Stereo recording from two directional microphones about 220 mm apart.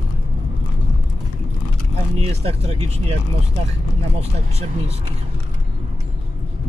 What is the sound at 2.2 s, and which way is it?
Speech, 30° right (ahead or behind).